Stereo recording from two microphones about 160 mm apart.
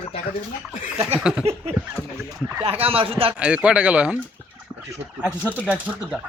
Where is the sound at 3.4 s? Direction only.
5° right (ahead or behind).